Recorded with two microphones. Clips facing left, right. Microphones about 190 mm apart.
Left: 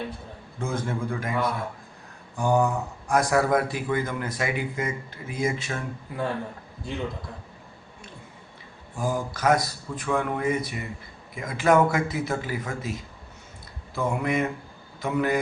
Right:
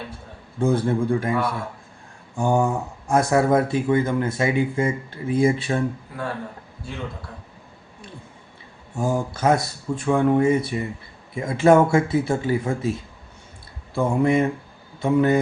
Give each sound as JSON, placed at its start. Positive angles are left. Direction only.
{"t": 0.6, "sound": "a man's voice", "side_deg": -35}
{"t": 9.0, "sound": "speech", "side_deg": -25}